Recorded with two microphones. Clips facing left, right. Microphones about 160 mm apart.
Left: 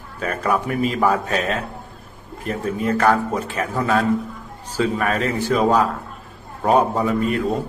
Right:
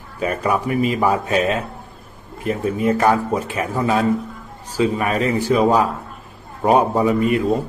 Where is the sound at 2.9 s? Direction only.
15° right (ahead or behind).